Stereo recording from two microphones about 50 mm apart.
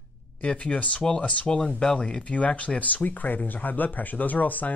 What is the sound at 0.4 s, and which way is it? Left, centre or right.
Speech, left.